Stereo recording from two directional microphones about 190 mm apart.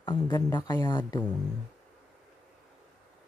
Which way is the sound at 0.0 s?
20° left (ahead or behind).